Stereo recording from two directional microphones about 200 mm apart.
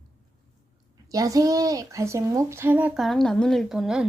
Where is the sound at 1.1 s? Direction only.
15° right (ahead or behind).